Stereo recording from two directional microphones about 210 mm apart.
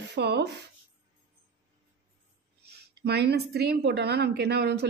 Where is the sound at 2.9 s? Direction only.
50° right (ahead or behind).